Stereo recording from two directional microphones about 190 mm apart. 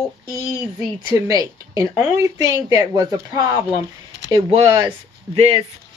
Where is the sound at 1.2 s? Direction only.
20° right (ahead or behind).